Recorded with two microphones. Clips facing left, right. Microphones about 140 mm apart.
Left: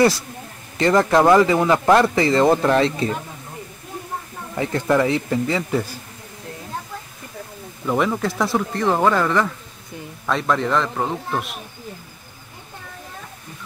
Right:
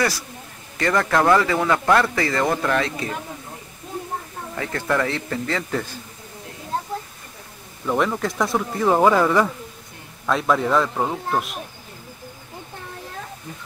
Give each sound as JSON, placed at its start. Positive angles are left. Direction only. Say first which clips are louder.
{"t": 0.7, "sound": "a man's voice", "louder": "left 4 dB", "side_deg": 20}
{"t": 4.6, "sound": "a man's voice", "louder": "left 4 dB", "side_deg": 20}
{"t": 7.8, "sound": "speech", "louder": "left 1 dB", "side_deg": 5}